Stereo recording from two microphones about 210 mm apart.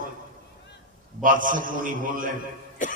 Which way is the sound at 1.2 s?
40° right (ahead or behind).